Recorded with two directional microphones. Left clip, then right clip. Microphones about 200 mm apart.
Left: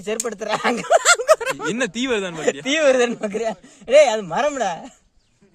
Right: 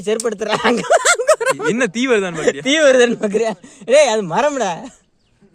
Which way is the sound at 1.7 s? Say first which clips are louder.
Right 6 dB; 5° right (ahead or behind).